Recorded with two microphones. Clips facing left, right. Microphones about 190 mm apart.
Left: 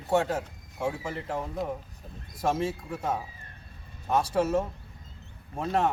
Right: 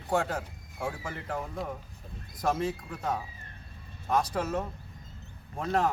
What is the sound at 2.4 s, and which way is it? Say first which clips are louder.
Speech: left 2 dB; 25° left (ahead or behind).